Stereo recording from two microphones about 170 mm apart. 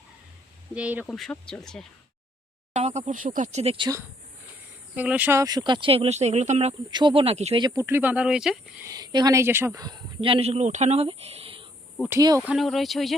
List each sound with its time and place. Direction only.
0.7 s speech: 10° right (ahead or behind)
1.0 s speech: 5° left (ahead or behind)
2.7 s speech: 40° right (ahead or behind)
4.9 s speech: 10° right (ahead or behind); by 6.7 s 40° right (ahead or behind)
6.9 s speech: 30° right (ahead or behind)
7.6 s speech: 20° right (ahead or behind)
8.8 s speech: 20° right (ahead or behind)
12.0 s speech: centre (ahead or behind)